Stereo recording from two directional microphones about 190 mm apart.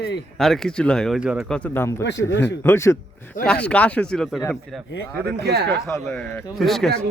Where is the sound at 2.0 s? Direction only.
70° left (ahead or behind).